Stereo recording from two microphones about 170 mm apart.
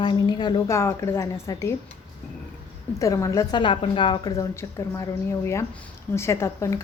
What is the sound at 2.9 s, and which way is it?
A woman's voice, 20° left (ahead or behind).